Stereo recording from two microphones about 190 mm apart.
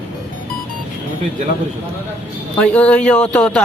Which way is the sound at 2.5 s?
5° left (ahead or behind).